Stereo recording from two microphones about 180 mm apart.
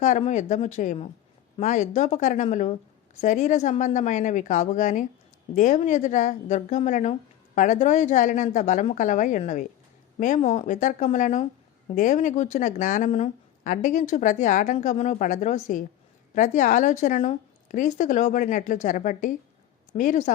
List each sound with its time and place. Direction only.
0.0 s speech: 40° left (ahead or behind)